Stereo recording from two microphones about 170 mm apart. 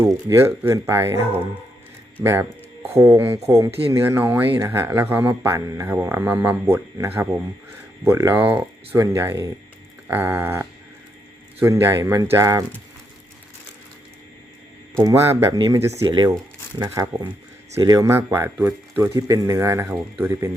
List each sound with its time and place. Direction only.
0.0 s speech: 20° right (ahead or behind)
2.2 s speech: 15° right (ahead or behind)
14.9 s speech: 15° right (ahead or behind)